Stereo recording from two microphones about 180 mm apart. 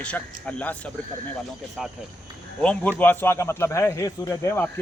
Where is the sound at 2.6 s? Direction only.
5° left (ahead or behind).